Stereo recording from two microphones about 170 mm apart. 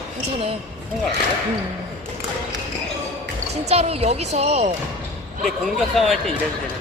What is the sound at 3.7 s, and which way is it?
A woman's voice, 35° right (ahead or behind).